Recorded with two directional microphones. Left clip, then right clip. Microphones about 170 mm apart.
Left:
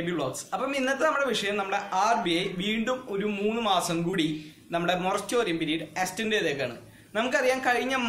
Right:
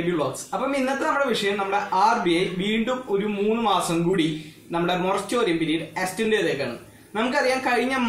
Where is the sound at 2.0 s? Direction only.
20° left (ahead or behind).